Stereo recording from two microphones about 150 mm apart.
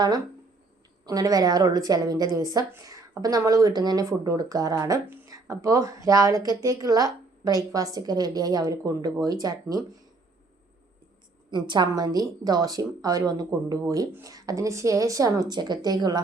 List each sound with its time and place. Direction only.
1.0 s a woman's voice: 25° right (ahead or behind)
11.5 s a woman's voice: 30° right (ahead or behind)